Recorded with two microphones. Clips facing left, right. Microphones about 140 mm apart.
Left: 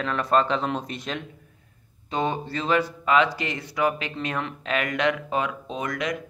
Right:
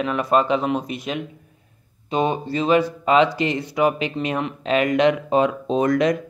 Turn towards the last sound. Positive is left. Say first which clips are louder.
# right 11 dB
turn(degrees=-35)  # may be behind; listen again after turning